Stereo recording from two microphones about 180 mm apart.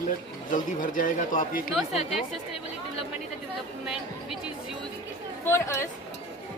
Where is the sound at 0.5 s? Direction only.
50° left (ahead or behind).